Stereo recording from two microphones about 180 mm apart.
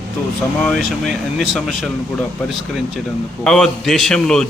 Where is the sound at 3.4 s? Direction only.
5° left (ahead or behind).